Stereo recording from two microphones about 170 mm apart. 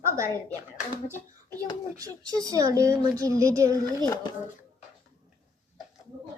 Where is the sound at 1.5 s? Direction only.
15° left (ahead or behind).